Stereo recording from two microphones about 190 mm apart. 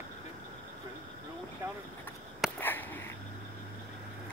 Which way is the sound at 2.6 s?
10° left (ahead or behind).